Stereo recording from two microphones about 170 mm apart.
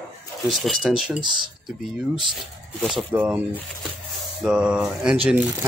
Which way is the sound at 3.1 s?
10° right (ahead or behind).